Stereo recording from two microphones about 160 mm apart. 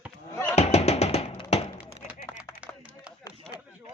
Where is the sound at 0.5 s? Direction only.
40° left (ahead or behind).